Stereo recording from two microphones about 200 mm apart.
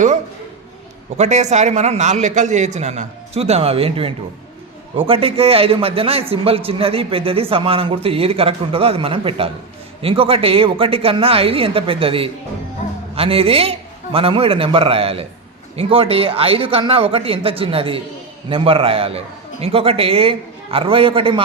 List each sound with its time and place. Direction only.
1.1 s a man's voice: 35° right (ahead or behind)